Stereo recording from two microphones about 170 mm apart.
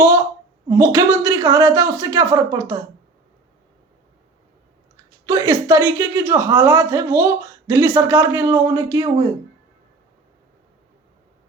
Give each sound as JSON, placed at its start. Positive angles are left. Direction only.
{"t": 0.7, "sound": "speech", "side_deg": -20}
{"t": 5.2, "sound": "speech", "side_deg": -20}